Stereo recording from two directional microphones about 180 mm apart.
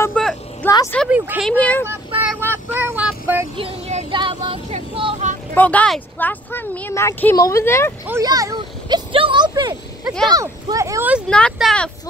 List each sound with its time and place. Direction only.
0.0 s vehicle: 5° left (ahead or behind)
1.0 s speech: 5° right (ahead or behind)
1.5 s speech: 10° left (ahead or behind)
2.4 s a sound: 10° right (ahead or behind)
3.5 s speech: 30° right (ahead or behind)
5.5 s speech: 10° left (ahead or behind)
8.1 s speech: 20° right (ahead or behind)
11.2 s speech: 5° left (ahead or behind)